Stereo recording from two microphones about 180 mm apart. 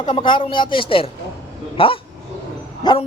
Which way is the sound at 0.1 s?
25° left (ahead or behind).